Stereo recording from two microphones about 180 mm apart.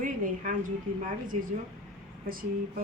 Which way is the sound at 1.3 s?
40° right (ahead or behind).